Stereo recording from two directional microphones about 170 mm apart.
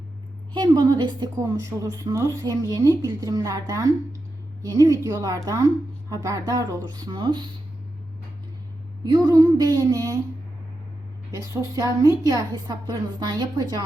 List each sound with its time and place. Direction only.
0.5 s a woman's voice: 25° right (ahead or behind)
9.0 s a woman's voice: 20° right (ahead or behind)
11.3 s a woman's voice: 20° right (ahead or behind)